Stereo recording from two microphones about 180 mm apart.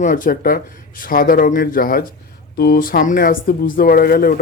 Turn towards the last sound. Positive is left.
turn(degrees=55)  # may be behind; listen again after turning